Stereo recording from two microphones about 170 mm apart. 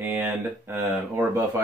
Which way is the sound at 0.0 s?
10° right (ahead or behind).